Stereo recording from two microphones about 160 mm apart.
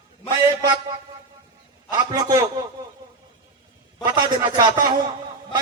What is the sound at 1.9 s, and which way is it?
Speech, 25° right (ahead or behind).